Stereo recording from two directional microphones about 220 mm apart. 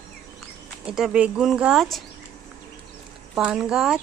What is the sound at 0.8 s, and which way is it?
Speech, 5° right (ahead or behind).